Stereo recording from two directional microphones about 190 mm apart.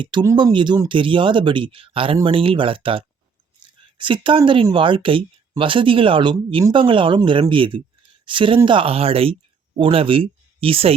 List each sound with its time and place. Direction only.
0.0 s speech: 25° right (ahead or behind)